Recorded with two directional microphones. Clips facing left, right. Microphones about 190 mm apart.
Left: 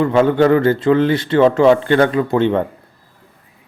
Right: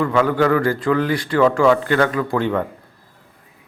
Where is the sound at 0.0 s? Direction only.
25° left (ahead or behind).